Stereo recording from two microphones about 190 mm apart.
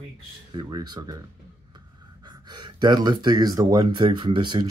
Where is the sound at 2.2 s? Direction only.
20° right (ahead or behind).